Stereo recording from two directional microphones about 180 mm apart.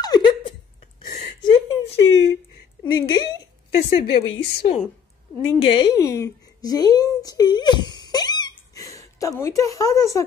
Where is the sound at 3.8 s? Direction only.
90° left.